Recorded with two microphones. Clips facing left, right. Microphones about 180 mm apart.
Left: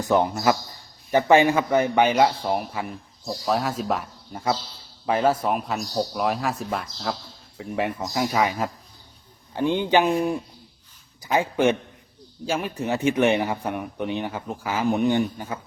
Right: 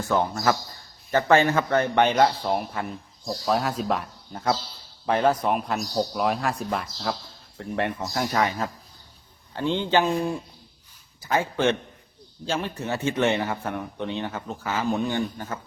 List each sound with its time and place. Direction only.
0.0 s a man's voice: 15° left (ahead or behind)